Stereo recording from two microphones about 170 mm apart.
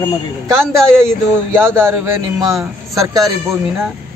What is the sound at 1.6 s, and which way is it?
Speech, 15° right (ahead or behind).